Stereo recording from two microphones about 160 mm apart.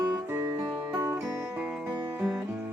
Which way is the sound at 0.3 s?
15° right (ahead or behind).